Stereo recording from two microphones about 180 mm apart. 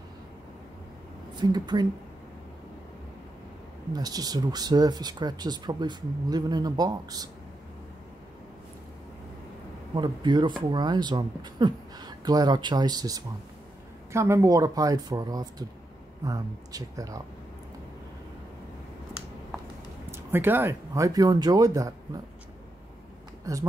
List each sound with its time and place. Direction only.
1.3 s speech: 25° right (ahead or behind)
3.9 s speech: 20° right (ahead or behind)
9.9 s speech: 25° right (ahead or behind)
20.1 s speech: 15° right (ahead or behind)
23.5 s speech: 20° right (ahead or behind)